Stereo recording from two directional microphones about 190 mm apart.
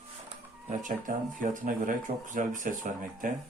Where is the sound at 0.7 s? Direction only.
40° right (ahead or behind).